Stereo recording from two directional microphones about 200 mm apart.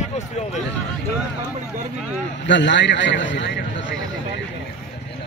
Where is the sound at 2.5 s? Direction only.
65° left (ahead or behind).